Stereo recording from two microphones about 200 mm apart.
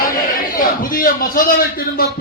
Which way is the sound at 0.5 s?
45° left (ahead or behind).